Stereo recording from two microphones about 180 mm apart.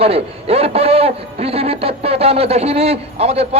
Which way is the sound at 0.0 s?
35° right (ahead or behind).